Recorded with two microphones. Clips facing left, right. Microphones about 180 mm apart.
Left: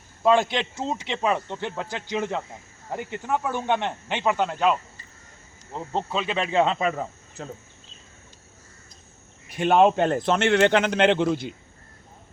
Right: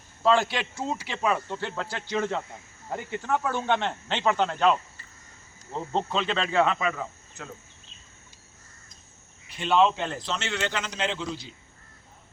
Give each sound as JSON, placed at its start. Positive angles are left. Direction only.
{"t": 0.2, "sound": "speech", "side_deg": 15}
{"t": 9.5, "sound": "a man's voice", "side_deg": 50}